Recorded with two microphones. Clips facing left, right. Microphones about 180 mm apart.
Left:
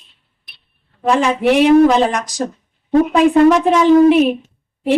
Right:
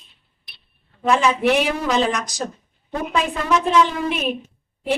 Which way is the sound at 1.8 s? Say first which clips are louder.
Left 9 dB; 55° left (ahead or behind).